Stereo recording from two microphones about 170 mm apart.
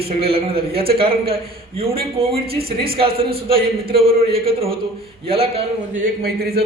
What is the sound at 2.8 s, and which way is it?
Speech, 35° right (ahead or behind).